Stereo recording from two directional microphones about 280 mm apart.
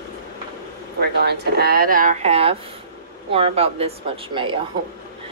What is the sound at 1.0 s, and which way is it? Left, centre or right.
Speech, right.